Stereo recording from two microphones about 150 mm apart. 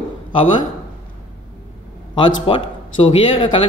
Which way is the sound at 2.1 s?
35° left (ahead or behind).